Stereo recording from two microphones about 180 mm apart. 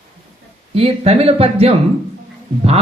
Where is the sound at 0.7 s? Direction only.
35° right (ahead or behind).